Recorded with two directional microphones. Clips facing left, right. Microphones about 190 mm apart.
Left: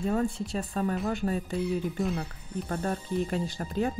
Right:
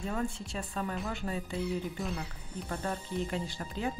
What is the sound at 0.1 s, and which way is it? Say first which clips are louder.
Speech: left 7 dB; 40° left (ahead or behind).